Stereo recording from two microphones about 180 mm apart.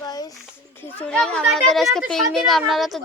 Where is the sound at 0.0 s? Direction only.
20° left (ahead or behind).